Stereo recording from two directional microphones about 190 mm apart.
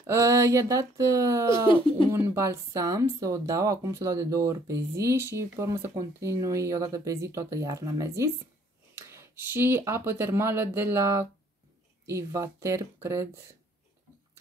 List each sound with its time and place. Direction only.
0.0 s speech: 15° right (ahead or behind)